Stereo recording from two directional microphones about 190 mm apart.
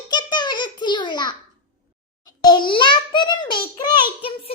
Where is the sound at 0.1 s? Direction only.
25° left (ahead or behind).